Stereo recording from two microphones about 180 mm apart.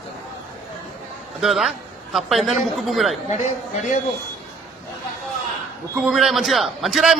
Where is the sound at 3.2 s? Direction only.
40° left (ahead or behind).